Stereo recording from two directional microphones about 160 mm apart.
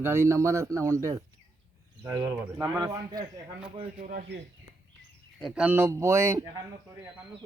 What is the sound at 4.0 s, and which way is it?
Speech, 65° right (ahead or behind).